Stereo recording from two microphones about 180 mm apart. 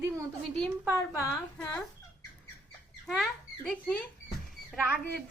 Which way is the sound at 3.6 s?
5° left (ahead or behind).